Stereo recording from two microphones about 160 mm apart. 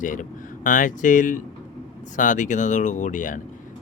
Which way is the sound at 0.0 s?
55° left (ahead or behind).